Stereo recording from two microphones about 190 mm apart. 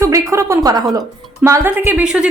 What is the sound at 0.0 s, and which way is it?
Speech, 15° right (ahead or behind).